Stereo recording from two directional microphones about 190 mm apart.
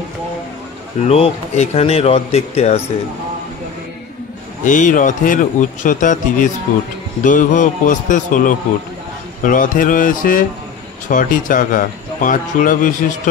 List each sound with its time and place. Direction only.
1.0 s speech: 35° left (ahead or behind)
4.6 s a man's voice: 40° left (ahead or behind)